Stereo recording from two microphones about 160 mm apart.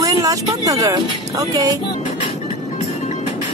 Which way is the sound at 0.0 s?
20° right (ahead or behind).